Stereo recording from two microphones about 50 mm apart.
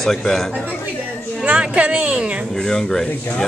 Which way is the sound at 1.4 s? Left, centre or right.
Right.